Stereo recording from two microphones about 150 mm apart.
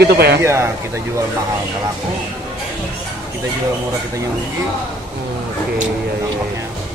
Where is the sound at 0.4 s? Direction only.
20° right (ahead or behind).